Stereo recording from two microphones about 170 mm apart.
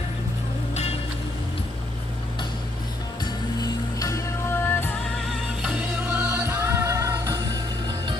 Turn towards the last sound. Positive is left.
turn(degrees=-20)  # may be behind; listen again after turning